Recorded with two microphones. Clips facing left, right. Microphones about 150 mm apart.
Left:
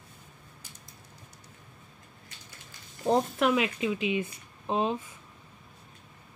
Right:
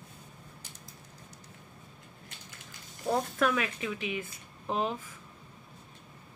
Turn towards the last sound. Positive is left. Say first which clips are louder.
# left 3 dB
turn(degrees=20)  # may be behind; listen again after turning